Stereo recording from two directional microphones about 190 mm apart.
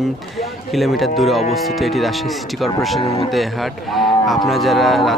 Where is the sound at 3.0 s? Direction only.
35° left (ahead or behind).